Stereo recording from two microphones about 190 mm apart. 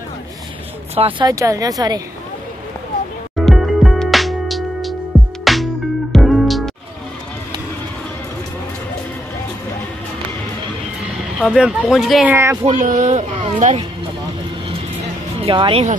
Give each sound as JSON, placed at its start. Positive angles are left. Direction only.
{"t": 0.9, "sound": "speech", "side_deg": -30}
{"t": 1.3, "sound": "speech", "side_deg": -15}
{"t": 3.4, "sound": "music", "side_deg": 0}
{"t": 11.3, "sound": "speech", "side_deg": 0}
{"t": 12.6, "sound": "speech", "side_deg": -40}
{"t": 15.4, "sound": "speech", "side_deg": -25}